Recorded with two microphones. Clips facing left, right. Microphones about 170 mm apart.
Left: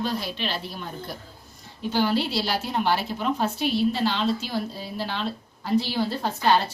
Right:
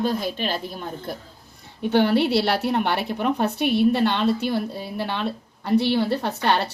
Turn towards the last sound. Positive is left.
turn(degrees=-65)  # may be behind; listen again after turning